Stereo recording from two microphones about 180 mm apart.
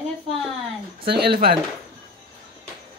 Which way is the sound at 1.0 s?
60° right (ahead or behind).